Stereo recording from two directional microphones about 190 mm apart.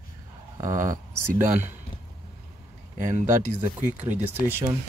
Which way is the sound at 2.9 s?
45° right (ahead or behind).